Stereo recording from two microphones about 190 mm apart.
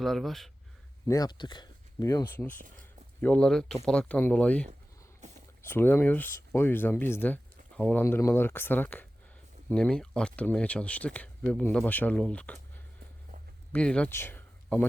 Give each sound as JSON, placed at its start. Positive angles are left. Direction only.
{"t": 0.0, "sound": "speech", "side_deg": 0}
{"t": 1.0, "sound": "speech", "side_deg": 20}
{"t": 13.7, "sound": "speech", "side_deg": 5}